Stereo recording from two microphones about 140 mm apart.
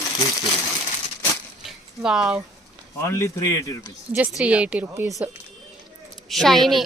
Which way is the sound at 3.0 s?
20° left (ahead or behind).